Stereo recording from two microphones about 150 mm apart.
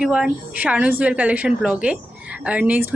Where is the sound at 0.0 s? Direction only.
5° right (ahead or behind).